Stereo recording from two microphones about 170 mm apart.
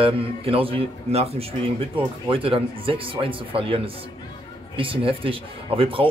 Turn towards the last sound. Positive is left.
turn(degrees=-30)  # may be behind; listen again after turning